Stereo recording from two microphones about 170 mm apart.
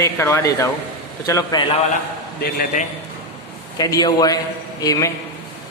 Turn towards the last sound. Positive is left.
turn(degrees=20)  # may be behind; listen again after turning